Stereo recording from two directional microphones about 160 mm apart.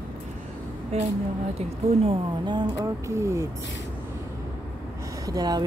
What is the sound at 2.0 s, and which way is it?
Speech, 25° right (ahead or behind).